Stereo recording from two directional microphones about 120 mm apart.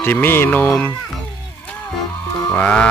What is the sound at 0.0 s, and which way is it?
Speech, 15° left (ahead or behind).